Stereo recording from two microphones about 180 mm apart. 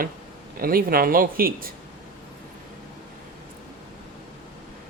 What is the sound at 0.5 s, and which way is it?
A man's voice, 55° right (ahead or behind).